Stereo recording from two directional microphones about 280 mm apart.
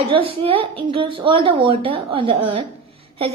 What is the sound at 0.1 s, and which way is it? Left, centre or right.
A woman's voice, centre.